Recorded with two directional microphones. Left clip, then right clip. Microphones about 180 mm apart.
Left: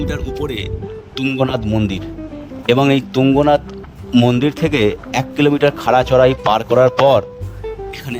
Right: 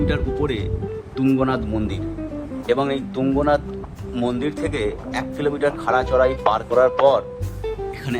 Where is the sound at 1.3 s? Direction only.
45° left (ahead or behind).